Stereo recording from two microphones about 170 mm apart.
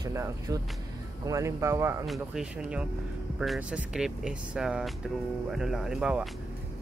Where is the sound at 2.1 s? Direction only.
5° right (ahead or behind).